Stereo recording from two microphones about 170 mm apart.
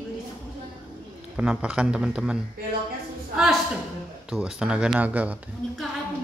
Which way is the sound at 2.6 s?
65° right (ahead or behind).